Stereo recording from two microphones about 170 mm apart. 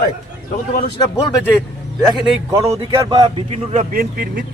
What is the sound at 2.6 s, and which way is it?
Speech, 40° right (ahead or behind).